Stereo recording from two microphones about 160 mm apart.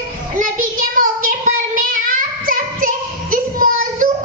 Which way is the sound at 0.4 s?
55° right (ahead or behind).